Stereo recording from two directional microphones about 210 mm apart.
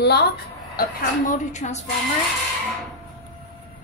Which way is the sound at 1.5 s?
35° left (ahead or behind).